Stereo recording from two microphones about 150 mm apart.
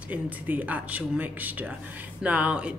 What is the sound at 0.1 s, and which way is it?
Speech, 10° right (ahead or behind).